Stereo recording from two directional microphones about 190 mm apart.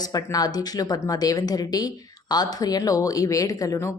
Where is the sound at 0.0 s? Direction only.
20° left (ahead or behind).